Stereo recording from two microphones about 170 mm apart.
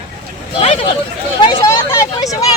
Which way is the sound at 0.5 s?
35° left (ahead or behind).